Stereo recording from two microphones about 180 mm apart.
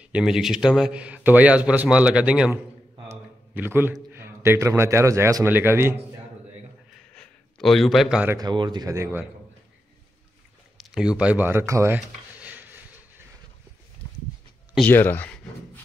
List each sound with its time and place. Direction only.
0.0 s a man's voice: 5° right (ahead or behind)
3.1 s a sound: 10° right (ahead or behind)
4.1 s a man's voice: 15° right (ahead or behind)
7.2 s a man's voice: centre (ahead or behind)
8.4 s speech: 25° right (ahead or behind)
10.8 s speech: 5° right (ahead or behind)
14.9 s a sound: 10° left (ahead or behind)